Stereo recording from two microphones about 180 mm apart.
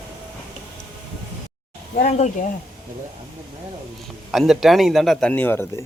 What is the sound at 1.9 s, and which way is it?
Speech, 40° left (ahead or behind).